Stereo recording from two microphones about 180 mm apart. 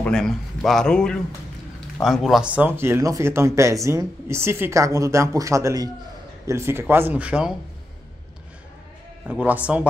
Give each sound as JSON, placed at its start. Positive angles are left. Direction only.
{"t": 0.0, "sound": "a man's voice", "side_deg": 5}
{"t": 9.3, "sound": "speech", "side_deg": -5}